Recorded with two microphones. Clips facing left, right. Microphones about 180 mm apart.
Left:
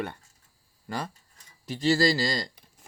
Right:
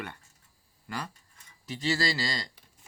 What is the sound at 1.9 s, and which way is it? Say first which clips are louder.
Speech: left 7 dB; 45° left (ahead or behind).